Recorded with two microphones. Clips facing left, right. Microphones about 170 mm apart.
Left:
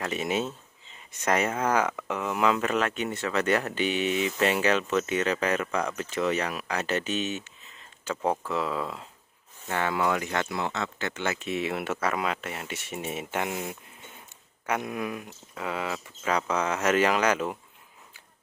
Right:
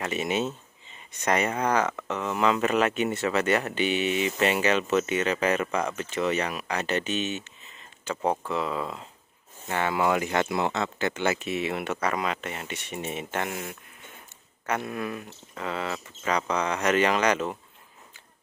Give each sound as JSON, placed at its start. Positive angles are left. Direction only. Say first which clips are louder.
{"t": 0.0, "sound": "speech", "louder": "right 1 dB", "side_deg": 0}
{"t": 13.5, "sound": "speech", "louder": "left 2 dB", "side_deg": 20}
{"t": 14.7, "sound": "speech", "louder": "even", "side_deg": 10}